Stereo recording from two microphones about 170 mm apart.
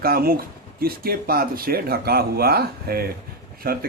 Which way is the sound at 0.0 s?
60° right (ahead or behind).